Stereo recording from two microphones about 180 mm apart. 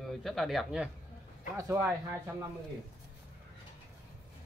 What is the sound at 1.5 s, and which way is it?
Speech, 15° right (ahead or behind).